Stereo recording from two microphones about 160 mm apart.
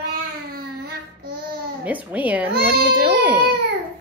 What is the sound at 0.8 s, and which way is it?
Child singing, 75° right (ahead or behind).